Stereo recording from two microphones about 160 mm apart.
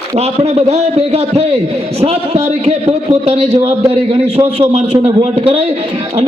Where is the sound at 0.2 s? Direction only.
40° right (ahead or behind).